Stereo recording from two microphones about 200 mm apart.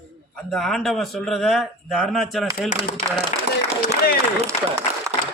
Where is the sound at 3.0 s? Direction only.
35° left (ahead or behind).